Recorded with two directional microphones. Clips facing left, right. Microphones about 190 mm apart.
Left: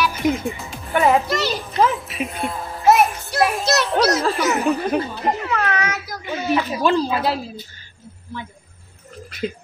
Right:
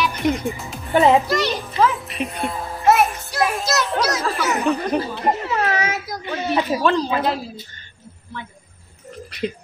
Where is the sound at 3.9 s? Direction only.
30° left (ahead or behind).